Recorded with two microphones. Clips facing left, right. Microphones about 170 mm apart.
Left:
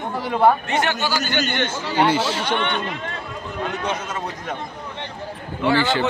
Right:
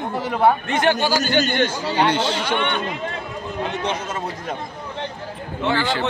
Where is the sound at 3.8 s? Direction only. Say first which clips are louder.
Right 1 dB; 25° right (ahead or behind).